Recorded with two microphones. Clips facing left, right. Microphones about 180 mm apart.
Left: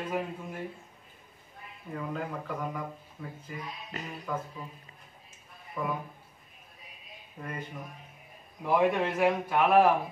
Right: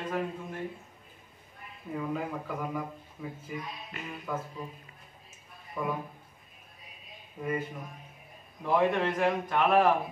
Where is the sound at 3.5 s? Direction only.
5° right (ahead or behind).